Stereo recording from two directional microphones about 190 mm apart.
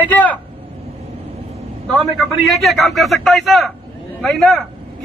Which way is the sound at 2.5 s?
Centre (ahead or behind).